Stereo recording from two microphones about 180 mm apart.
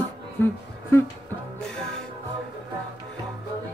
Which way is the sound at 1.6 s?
5° left (ahead or behind).